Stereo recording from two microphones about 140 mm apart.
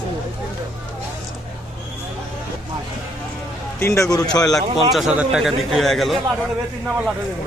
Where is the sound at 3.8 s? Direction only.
20° left (ahead or behind).